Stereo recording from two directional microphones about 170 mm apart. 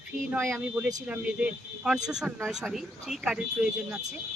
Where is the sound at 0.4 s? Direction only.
Centre (ahead or behind).